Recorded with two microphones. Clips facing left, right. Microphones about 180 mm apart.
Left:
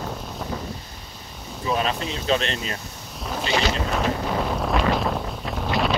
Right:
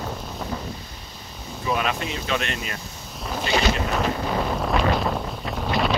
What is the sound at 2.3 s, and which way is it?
Speech, 30° left (ahead or behind).